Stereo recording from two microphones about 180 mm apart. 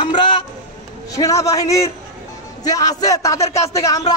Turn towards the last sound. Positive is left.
turn(degrees=20)  # may be behind; listen again after turning